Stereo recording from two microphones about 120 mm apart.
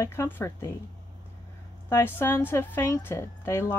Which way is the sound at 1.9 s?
20° left (ahead or behind).